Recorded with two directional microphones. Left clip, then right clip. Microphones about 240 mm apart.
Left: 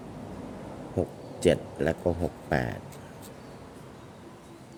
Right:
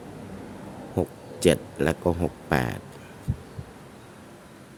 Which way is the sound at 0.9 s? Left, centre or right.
Centre.